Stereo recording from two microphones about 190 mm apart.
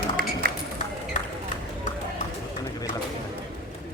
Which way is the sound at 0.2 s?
50° right (ahead or behind).